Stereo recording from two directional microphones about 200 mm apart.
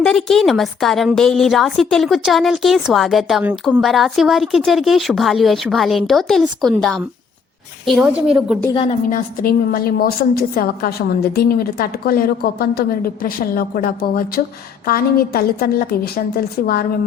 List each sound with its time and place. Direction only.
0.0 s a woman's voice: centre (ahead or behind)
8.7 s a woman's voice: 25° left (ahead or behind)
9.1 s a woman's voice: 45° left (ahead or behind)